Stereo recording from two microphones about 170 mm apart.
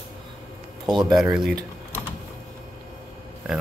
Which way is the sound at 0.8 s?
25° right (ahead or behind).